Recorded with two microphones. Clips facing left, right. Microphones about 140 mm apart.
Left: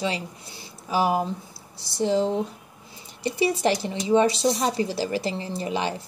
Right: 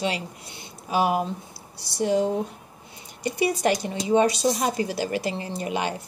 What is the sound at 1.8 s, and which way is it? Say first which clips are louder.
A woman's voice: even; 25° left (ahead or behind).